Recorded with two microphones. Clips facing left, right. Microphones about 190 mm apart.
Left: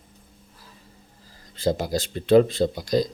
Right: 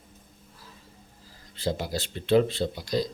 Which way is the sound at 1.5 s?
45° left (ahead or behind).